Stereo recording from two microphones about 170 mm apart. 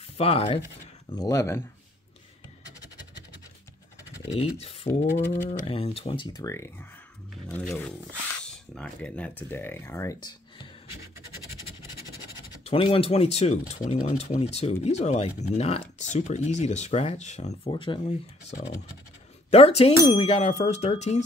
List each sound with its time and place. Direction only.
0.2 s speech: 35° left (ahead or behind)
1.1 s speech: 20° left (ahead or behind)
4.3 s speech: 35° left (ahead or behind); by 10.7 s 20° left (ahead or behind)
12.3 s speech: 30° left (ahead or behind)
19.5 s speech: 40° left (ahead or behind)